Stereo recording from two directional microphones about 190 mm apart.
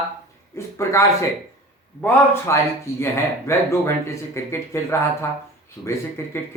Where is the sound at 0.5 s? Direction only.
15° left (ahead or behind).